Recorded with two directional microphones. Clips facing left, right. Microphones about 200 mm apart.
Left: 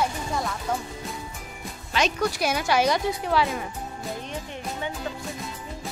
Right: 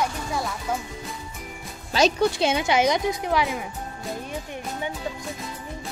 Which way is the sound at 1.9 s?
30° right (ahead or behind).